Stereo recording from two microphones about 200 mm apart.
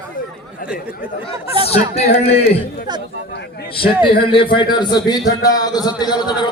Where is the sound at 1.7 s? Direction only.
30° left (ahead or behind).